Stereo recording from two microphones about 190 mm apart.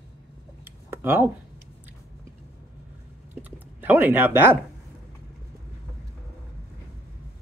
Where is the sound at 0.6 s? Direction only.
10° right (ahead or behind).